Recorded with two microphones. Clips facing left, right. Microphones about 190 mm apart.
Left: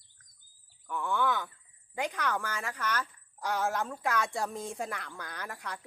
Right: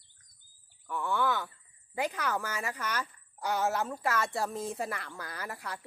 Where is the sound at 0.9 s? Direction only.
Centre (ahead or behind).